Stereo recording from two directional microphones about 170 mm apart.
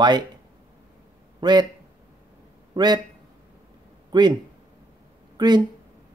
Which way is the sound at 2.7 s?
25° right (ahead or behind).